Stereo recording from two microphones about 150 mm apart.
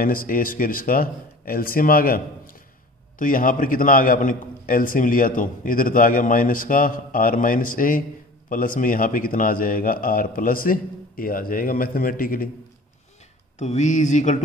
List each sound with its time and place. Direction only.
0.0 s a man's voice: 70° left (ahead or behind)
13.6 s speech: 50° left (ahead or behind)